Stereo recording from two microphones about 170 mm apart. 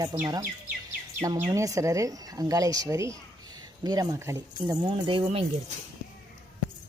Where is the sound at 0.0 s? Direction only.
20° right (ahead or behind).